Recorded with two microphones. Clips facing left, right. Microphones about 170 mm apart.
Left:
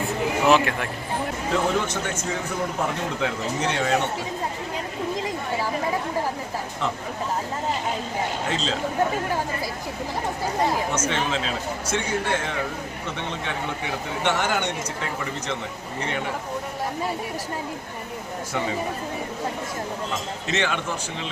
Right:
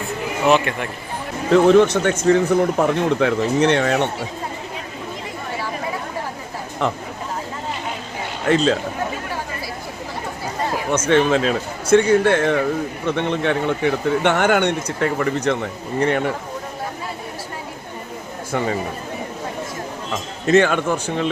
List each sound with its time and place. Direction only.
0.4 s speech: centre (ahead or behind)
1.5 s speech: 70° right (ahead or behind)
6.8 s speech: 60° right (ahead or behind)
8.4 s speech: 55° right (ahead or behind)
10.9 s speech: 60° right (ahead or behind)
20.5 s speech: 50° right (ahead or behind)